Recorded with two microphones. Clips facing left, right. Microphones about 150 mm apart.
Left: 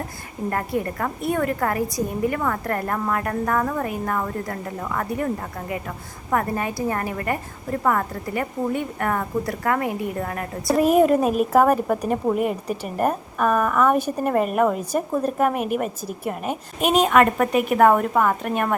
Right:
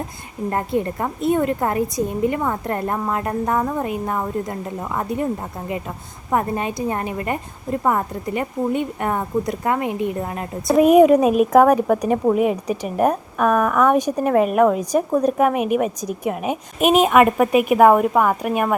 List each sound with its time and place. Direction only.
0.5 s a woman's voice: 25° right (ahead or behind)
10.9 s a woman's voice: centre (ahead or behind)
16.8 s a woman's voice: 15° right (ahead or behind)